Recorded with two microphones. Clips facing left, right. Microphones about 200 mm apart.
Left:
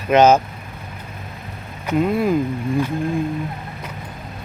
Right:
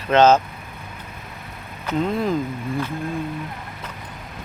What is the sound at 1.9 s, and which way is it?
Speech, 10° left (ahead or behind).